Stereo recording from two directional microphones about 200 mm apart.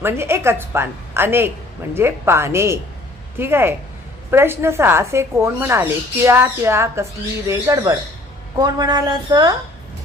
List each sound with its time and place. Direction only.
0.0 s a woman's voice: 10° right (ahead or behind)